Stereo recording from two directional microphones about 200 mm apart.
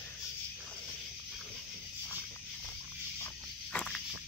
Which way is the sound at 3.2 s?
5° left (ahead or behind).